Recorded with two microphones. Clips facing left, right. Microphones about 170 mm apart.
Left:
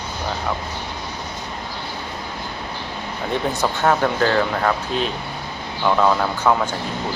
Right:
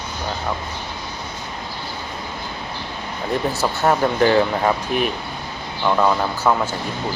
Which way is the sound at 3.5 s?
5° right (ahead or behind).